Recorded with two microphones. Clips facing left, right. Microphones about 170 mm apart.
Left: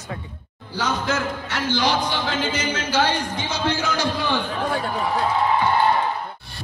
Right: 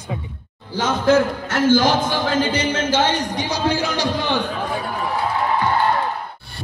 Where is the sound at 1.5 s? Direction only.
45° right (ahead or behind).